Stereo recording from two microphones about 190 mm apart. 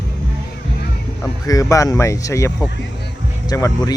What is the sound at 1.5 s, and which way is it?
Speech, 15° left (ahead or behind).